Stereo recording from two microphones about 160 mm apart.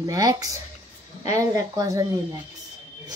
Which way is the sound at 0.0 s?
20° right (ahead or behind).